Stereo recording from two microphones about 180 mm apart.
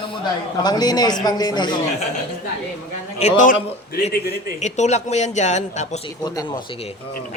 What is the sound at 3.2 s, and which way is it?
Speech, 45° left (ahead or behind).